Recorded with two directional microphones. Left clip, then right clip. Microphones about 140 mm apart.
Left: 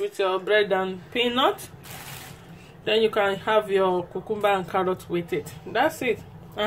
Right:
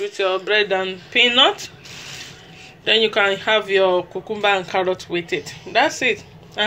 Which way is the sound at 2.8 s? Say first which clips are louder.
Right 5 dB; 20° left (ahead or behind).